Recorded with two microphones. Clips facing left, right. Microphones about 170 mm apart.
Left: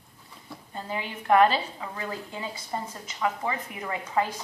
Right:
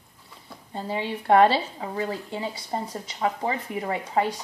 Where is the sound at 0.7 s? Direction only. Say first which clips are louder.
Right 5 dB; 30° right (ahead or behind).